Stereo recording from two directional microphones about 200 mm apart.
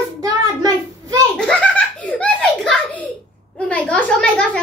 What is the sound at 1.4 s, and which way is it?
Hands, 5° left (ahead or behind).